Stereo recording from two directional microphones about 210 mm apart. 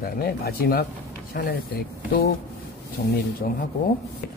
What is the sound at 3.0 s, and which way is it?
Speech, 50° left (ahead or behind).